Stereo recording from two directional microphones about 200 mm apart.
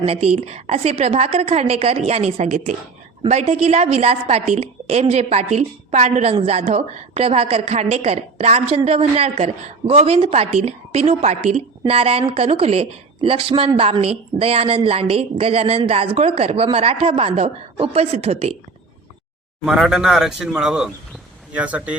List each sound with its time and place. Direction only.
0.0 s a woman's voice: 30° right (ahead or behind)
19.6 s a man's voice: 5° right (ahead or behind)